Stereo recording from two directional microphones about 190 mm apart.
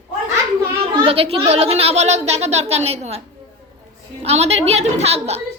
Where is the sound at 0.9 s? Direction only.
30° right (ahead or behind).